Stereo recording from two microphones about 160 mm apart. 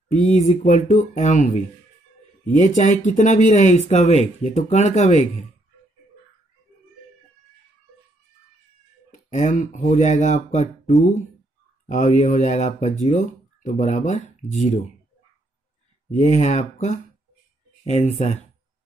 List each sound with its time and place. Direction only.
0.1 s speech: 50° left (ahead or behind)
9.1 s speech: 50° left (ahead or behind)
11.8 s speech: 50° left (ahead or behind)
16.1 s speech: 45° left (ahead or behind)